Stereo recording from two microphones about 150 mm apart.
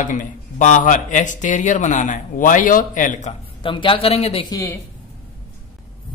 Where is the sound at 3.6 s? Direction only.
35° left (ahead or behind).